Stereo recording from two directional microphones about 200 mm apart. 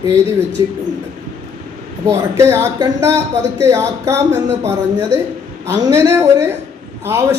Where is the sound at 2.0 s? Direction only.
15° right (ahead or behind).